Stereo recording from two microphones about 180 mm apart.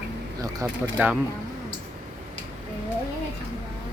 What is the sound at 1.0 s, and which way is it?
Speech, 10° right (ahead or behind).